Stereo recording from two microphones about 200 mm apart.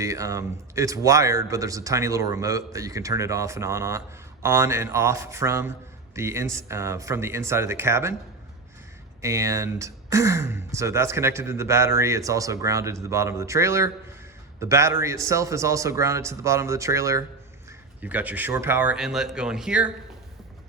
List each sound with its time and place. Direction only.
0.0 s speech: 15° right (ahead or behind)
9.2 s speech: 15° right (ahead or behind)